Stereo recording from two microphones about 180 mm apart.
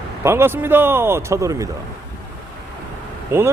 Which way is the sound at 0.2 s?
15° right (ahead or behind).